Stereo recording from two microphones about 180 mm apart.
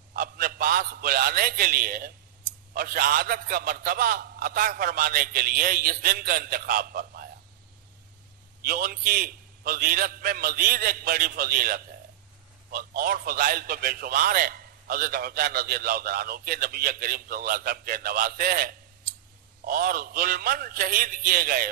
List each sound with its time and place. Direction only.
0.1 s a sound: 55° right (ahead or behind)
2.7 s a man's voice: 55° right (ahead or behind)
8.6 s a man's voice: 55° right (ahead or behind)